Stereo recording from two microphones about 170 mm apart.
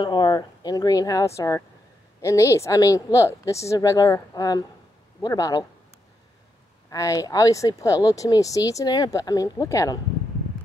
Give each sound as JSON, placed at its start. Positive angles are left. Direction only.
{"t": 0.0, "sound": "speech", "side_deg": 25}
{"t": 6.9, "sound": "speech", "side_deg": 20}